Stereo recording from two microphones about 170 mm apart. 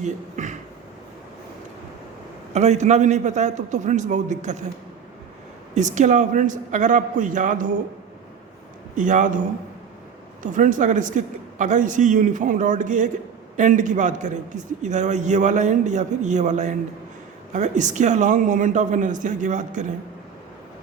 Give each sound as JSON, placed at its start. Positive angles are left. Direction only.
{"t": 0.0, "sound": "a man's voice", "side_deg": -45}
{"t": 2.5, "sound": "a man's voice", "side_deg": -40}
{"t": 5.7, "sound": "a man's voice", "side_deg": -45}
{"t": 9.0, "sound": "a man's voice", "side_deg": -50}
{"t": 10.4, "sound": "a man's voice", "side_deg": -50}